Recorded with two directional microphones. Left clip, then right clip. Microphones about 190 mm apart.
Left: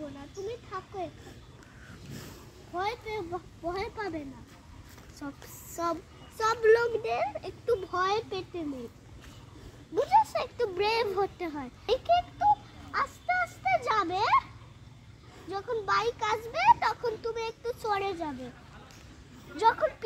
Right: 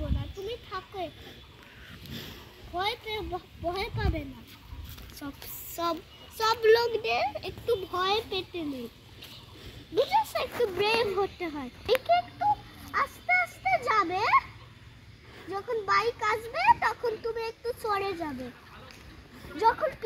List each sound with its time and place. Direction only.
0.5 s a sound: 10° right (ahead or behind)
2.7 s speech: 15° right (ahead or behind)
5.2 s a child's voice: 10° right (ahead or behind)
5.8 s a child's voice: 30° right (ahead or behind)
9.9 s speech: centre (ahead or behind)
12.9 s a sound: 5° right (ahead or behind)
15.5 s a child's voice: 10° right (ahead or behind)
19.6 s speech: 5° left (ahead or behind)